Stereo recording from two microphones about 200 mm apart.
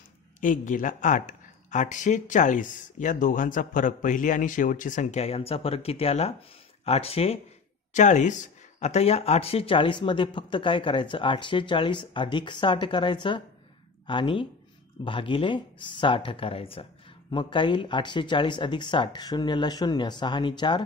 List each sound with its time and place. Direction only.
0.4 s speech: 40° left (ahead or behind); by 20.8 s 25° left (ahead or behind)